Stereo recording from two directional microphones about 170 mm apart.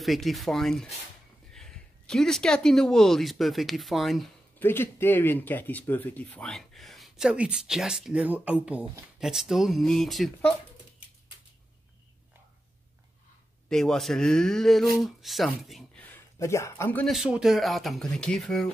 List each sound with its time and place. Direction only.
0.0 s speech: centre (ahead or behind)
4.6 s speech: 15° left (ahead or behind)
13.7 s speech: 5° left (ahead or behind)
16.1 s speech: 15° left (ahead or behind)
17.0 s speech: centre (ahead or behind)